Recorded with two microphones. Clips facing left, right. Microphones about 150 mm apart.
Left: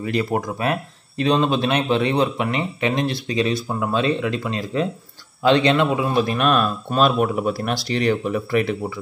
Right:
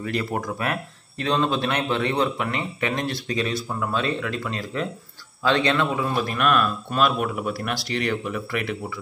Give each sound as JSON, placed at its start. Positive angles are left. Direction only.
{"t": 0.0, "sound": "speech", "side_deg": 20}